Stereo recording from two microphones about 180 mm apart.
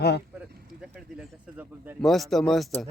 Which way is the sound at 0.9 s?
10° right (ahead or behind).